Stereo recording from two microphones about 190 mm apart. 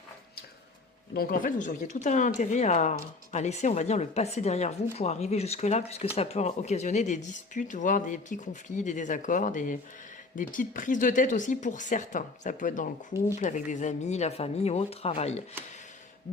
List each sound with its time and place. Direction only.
1.1 s speech: 50° left (ahead or behind); by 15.4 s 35° left (ahead or behind)